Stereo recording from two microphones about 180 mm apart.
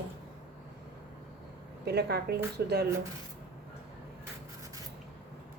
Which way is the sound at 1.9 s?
65° right (ahead or behind).